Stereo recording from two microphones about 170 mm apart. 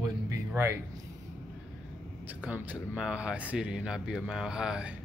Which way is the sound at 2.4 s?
5° right (ahead or behind).